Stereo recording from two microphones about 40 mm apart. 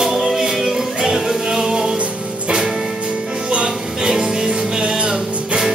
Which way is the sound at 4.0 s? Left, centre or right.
Centre.